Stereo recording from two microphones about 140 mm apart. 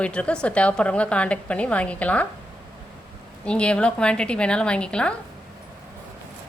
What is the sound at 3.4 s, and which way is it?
A woman's voice, 5° left (ahead or behind).